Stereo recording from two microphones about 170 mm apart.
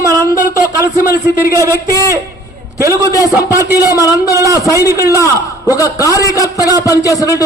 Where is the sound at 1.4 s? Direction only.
15° right (ahead or behind).